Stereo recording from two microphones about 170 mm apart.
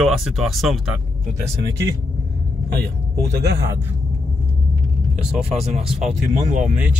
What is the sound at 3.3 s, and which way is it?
Speech, 75° right (ahead or behind).